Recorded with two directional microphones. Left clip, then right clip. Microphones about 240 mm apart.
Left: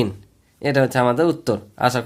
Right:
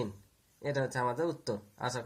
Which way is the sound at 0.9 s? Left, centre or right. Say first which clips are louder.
Left 15 dB; left.